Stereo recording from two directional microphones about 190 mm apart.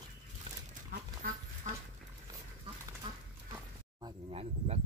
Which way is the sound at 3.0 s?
25° right (ahead or behind).